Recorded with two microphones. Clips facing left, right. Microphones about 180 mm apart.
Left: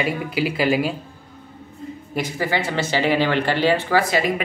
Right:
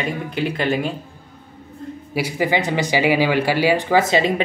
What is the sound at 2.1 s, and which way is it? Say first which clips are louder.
A man's voice: right 3 dB; 15° right (ahead or behind).